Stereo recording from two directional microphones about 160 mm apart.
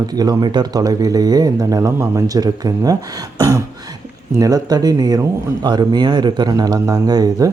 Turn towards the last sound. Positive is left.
turn(degrees=-25)  # may be behind; listen again after turning